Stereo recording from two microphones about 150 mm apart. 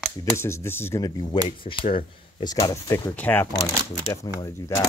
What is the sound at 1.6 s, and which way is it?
Speech, 35° left (ahead or behind).